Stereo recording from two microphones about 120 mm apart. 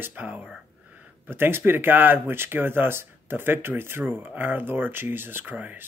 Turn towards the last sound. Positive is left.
turn(degrees=-15)  # may be behind; listen again after turning